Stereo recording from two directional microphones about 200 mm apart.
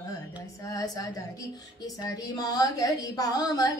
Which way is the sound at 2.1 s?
20° left (ahead or behind).